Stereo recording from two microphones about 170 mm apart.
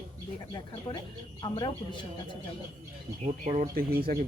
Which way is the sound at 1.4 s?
25° left (ahead or behind).